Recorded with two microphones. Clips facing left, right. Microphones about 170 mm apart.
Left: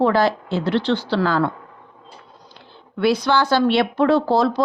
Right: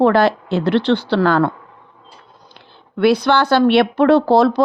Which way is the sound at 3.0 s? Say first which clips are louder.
Right 4 dB; 60° right (ahead or behind).